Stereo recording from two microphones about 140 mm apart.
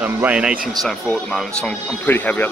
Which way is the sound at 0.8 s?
5° left (ahead or behind).